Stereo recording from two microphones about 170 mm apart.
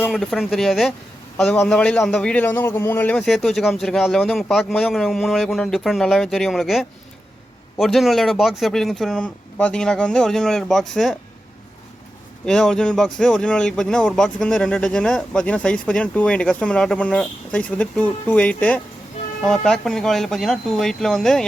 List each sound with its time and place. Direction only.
0.1 s speech: centre (ahead or behind)
12.5 s speech: 5° left (ahead or behind)